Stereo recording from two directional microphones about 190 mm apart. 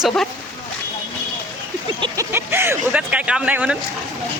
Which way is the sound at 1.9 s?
20° right (ahead or behind).